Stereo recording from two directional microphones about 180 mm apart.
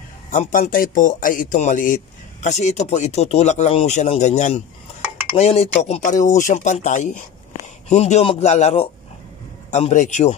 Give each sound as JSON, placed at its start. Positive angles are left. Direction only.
{"t": 0.3, "sound": "speech", "side_deg": 45}